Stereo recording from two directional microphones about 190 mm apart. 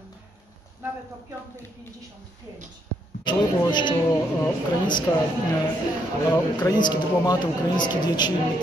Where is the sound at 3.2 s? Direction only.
25° left (ahead or behind).